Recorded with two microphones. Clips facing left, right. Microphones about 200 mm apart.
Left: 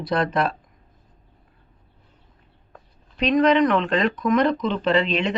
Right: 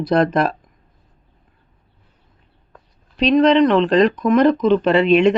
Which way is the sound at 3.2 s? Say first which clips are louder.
Right 5 dB; 30° right (ahead or behind).